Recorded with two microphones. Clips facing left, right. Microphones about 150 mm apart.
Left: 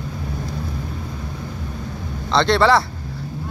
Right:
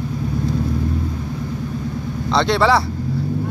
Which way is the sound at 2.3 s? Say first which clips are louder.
Even; 10° right (ahead or behind).